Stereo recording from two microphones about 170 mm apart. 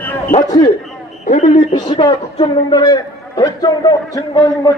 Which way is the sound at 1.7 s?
25° left (ahead or behind).